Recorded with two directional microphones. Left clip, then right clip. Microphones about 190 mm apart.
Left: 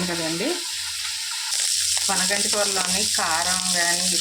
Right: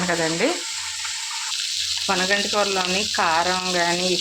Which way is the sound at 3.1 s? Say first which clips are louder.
Right 6 dB; 30° right (ahead or behind).